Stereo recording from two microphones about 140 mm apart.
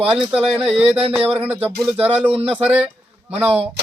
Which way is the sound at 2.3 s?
45° right (ahead or behind).